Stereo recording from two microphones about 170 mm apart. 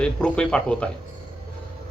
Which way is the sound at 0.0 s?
5° left (ahead or behind).